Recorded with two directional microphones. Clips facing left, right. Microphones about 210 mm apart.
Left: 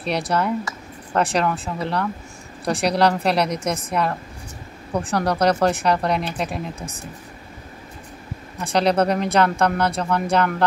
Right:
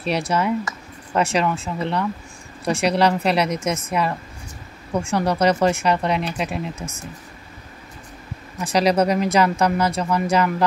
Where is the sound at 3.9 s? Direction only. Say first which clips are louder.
Even; 5° right (ahead or behind).